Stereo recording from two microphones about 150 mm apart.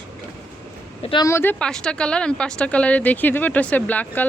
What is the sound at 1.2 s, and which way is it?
Speech, 15° left (ahead or behind).